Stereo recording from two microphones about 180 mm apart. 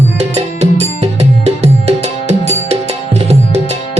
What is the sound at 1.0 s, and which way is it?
Music, 35° right (ahead or behind).